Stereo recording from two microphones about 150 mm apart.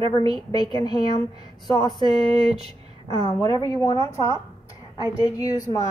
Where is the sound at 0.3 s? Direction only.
30° left (ahead or behind).